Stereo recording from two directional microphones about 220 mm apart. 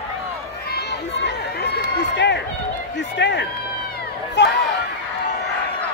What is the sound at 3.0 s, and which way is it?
Speech, 50° left (ahead or behind).